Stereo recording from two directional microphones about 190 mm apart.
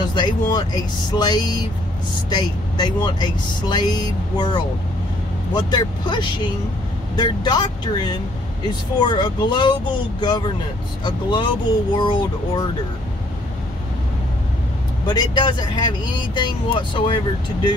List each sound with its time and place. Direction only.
0.1 s speech: 25° left (ahead or behind)
15.0 s speech: 25° left (ahead or behind)